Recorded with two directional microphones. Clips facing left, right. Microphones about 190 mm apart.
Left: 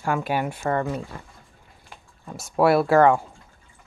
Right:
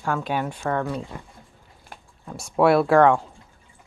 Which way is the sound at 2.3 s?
Centre (ahead or behind).